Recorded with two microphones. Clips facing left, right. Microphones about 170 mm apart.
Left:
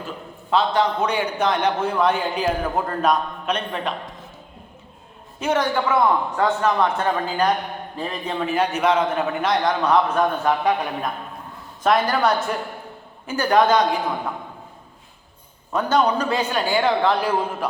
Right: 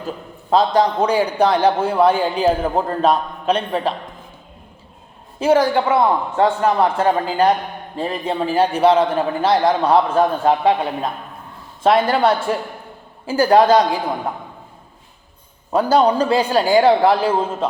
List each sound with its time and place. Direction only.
0.5 s a man's voice: 35° right (ahead or behind)
5.4 s a man's voice: 30° right (ahead or behind)
15.7 s a man's voice: 30° right (ahead or behind)